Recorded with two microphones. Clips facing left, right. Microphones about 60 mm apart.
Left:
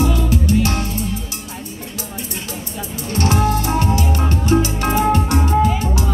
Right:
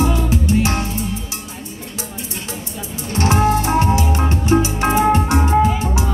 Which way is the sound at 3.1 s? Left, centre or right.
Right.